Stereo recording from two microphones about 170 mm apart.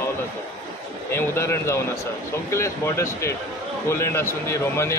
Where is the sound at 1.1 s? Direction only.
15° left (ahead or behind).